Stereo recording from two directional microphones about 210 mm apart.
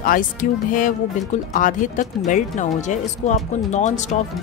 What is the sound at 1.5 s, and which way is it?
Speech, 40° left (ahead or behind).